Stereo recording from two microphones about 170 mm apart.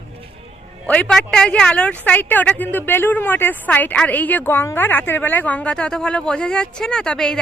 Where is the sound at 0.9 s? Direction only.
5° left (ahead or behind).